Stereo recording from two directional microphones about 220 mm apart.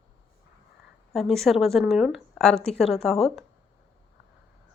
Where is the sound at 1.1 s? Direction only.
Centre (ahead or behind).